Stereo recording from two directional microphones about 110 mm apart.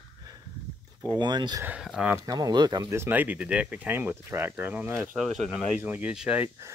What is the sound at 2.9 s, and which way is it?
Speech, 20° right (ahead or behind).